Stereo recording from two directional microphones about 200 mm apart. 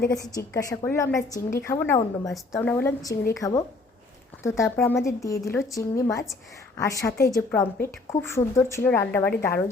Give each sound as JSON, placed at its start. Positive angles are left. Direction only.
{"t": 0.3, "sound": "a woman's voice", "side_deg": 15}